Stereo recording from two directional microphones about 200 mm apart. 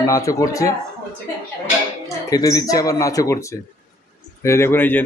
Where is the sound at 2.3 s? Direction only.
15° left (ahead or behind).